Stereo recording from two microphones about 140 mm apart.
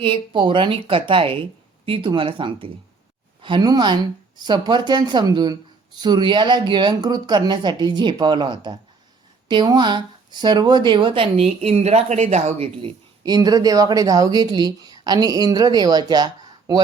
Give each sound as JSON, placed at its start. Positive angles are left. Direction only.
{"t": 0.0, "sound": "speech", "side_deg": -35}
{"t": 13.2, "sound": "speech", "side_deg": -30}